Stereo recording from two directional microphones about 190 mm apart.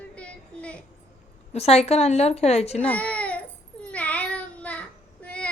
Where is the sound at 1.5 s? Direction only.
35° left (ahead or behind).